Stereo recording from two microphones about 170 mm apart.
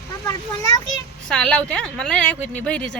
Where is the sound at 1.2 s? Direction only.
5° left (ahead or behind).